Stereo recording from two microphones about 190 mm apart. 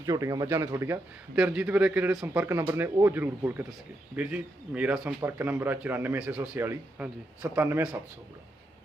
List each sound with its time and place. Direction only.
0.0 s speech: 20° right (ahead or behind)